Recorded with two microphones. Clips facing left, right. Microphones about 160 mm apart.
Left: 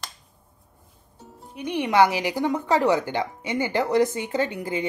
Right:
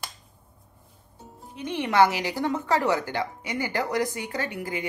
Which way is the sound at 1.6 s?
15° left (ahead or behind).